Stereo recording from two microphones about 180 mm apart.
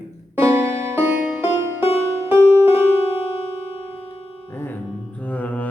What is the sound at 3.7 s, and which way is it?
Music, 35° left (ahead or behind).